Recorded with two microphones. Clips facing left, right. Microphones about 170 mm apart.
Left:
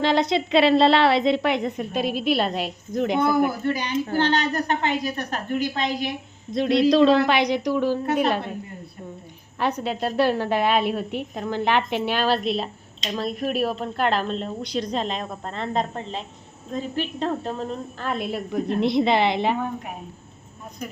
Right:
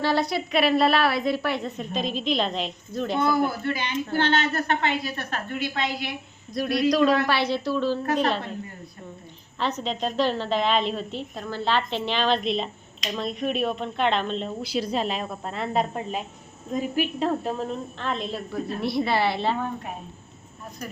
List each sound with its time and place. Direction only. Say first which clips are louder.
0.0 s a woman's voice: left 3 dB; 20° left (ahead or behind)
4.2 s speech: even; 40° left (ahead or behind)
5.0 s a woman's voice: left 4 dB; 15° left (ahead or behind)
9.6 s a woman's voice: left 3 dB; 10° left (ahead or behind)